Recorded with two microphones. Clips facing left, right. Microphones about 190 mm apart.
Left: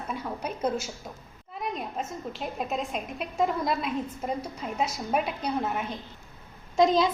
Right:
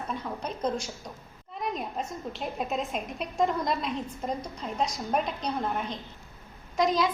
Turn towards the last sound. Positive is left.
turn(degrees=25)  # may be behind; listen again after turning